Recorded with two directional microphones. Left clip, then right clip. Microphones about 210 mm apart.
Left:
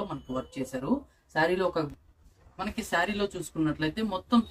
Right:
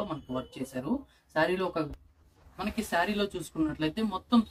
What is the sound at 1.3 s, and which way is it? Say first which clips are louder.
Speech: left 2 dB; 15° right (ahead or behind).